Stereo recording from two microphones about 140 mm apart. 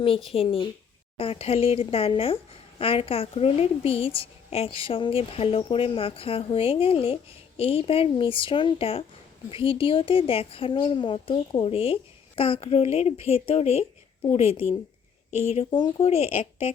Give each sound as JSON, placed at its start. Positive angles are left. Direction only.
{"t": 0.3, "sound": "a woman's voice", "side_deg": 40}